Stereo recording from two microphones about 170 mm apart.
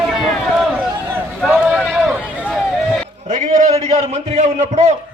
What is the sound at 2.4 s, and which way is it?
Vehicle, centre (ahead or behind).